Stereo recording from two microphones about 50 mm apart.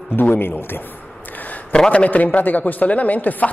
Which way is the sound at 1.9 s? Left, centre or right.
Left.